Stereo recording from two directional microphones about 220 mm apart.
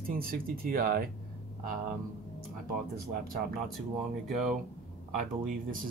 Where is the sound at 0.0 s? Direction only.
40° right (ahead or behind).